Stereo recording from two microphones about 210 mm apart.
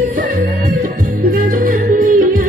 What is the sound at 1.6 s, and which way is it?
Music, 40° right (ahead or behind).